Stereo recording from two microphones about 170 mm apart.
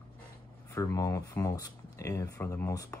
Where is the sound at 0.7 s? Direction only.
20° left (ahead or behind).